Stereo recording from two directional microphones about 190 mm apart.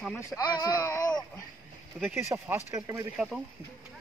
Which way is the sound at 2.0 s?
10° right (ahead or behind).